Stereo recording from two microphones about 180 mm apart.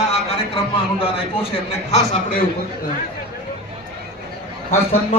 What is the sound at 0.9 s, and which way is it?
A man's voice, 30° left (ahead or behind).